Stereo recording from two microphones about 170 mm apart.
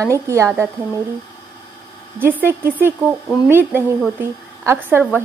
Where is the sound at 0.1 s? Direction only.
15° right (ahead or behind).